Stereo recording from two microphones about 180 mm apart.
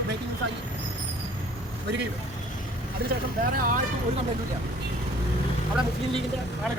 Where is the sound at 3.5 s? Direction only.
50° right (ahead or behind).